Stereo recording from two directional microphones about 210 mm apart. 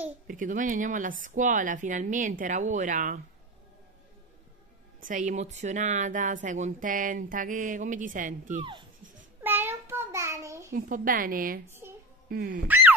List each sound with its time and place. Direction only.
0.3 s speech: 40° right (ahead or behind)
5.0 s speech: 40° right (ahead or behind)
9.4 s child singing: 10° right (ahead or behind)
10.7 s a woman's voice: 40° right (ahead or behind)
11.8 s a sound: 10° right (ahead or behind)
12.3 s speech: 45° right (ahead or behind)
12.6 s boing: 10° right (ahead or behind)